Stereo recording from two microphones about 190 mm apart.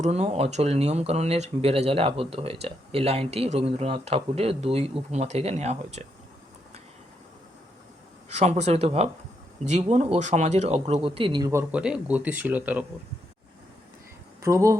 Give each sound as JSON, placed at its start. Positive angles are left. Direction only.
{"t": 0.0, "sound": "speech", "side_deg": -35}
{"t": 8.3, "sound": "speech", "side_deg": -35}
{"t": 11.7, "sound": "speech", "side_deg": -5}
{"t": 14.4, "sound": "speech", "side_deg": -15}